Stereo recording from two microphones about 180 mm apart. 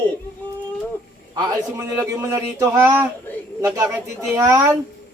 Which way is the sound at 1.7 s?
15° right (ahead or behind).